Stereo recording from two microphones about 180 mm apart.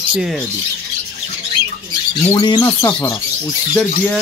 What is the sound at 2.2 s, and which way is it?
Bird, 20° left (ahead or behind).